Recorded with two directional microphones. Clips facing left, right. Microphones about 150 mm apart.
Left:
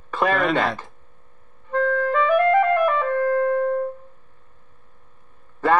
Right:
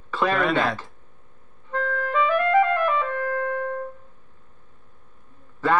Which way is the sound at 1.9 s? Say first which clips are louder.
Left 3 dB; 15° left (ahead or behind).